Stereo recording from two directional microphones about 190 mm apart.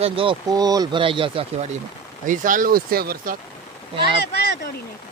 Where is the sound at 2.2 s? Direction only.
45° right (ahead or behind).